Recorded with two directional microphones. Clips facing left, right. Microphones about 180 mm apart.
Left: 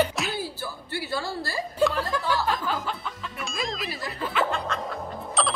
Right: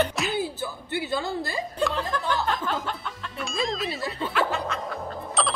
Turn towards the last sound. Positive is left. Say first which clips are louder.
# even
turn(degrees=0)  # may be behind; listen again after turning